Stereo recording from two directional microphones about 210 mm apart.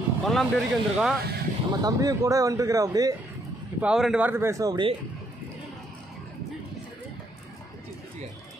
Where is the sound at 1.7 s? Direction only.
15° right (ahead or behind).